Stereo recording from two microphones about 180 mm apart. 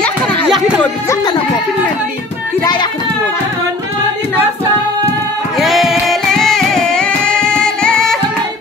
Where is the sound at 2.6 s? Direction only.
25° left (ahead or behind).